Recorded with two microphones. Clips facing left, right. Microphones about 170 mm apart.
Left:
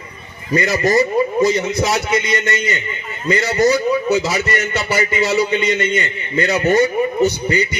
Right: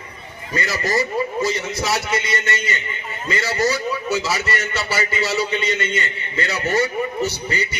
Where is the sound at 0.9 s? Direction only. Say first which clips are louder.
Left 5 dB; 20° left (ahead or behind).